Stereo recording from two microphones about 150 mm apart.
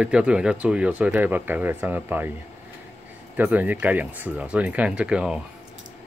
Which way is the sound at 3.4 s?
10° right (ahead or behind).